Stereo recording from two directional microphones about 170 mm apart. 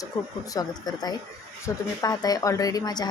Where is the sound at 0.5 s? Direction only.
25° left (ahead or behind).